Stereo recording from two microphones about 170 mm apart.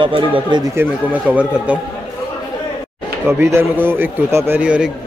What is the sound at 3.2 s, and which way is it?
A man's voice, 15° right (ahead or behind).